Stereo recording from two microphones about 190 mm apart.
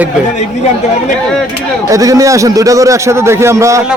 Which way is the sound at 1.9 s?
15° right (ahead or behind).